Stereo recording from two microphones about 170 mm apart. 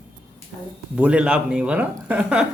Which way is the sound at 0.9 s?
5° right (ahead or behind).